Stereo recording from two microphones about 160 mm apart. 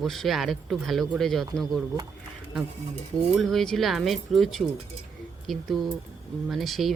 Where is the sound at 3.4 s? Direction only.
Centre (ahead or behind).